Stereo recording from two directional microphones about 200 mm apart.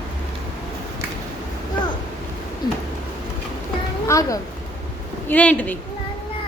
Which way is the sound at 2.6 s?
20° left (ahead or behind).